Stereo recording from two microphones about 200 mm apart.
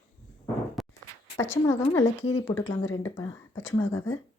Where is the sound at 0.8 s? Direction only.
Centre (ahead or behind).